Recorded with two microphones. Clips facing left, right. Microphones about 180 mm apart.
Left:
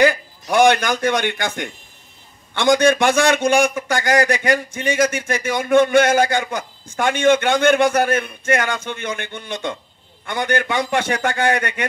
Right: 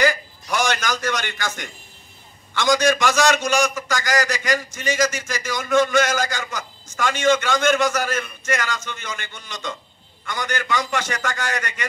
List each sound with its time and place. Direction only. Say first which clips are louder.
0.0 s a man's voice: left 4 dB; 55° left (ahead or behind)